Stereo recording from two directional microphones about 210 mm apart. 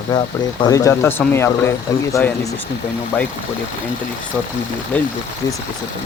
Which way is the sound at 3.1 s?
10° left (ahead or behind).